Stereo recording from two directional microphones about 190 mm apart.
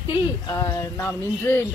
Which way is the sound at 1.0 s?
15° left (ahead or behind).